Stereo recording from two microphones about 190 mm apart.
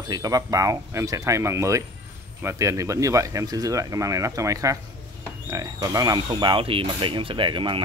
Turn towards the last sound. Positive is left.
turn(degrees=-25)  # may be behind; listen again after turning